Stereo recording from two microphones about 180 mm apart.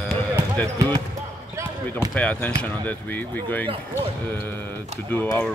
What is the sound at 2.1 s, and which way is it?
Speech, 10° left (ahead or behind).